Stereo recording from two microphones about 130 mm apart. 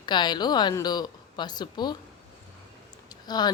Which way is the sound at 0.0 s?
35° left (ahead or behind).